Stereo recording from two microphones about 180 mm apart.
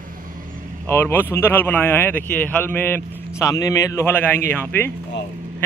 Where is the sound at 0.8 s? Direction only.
10° left (ahead or behind).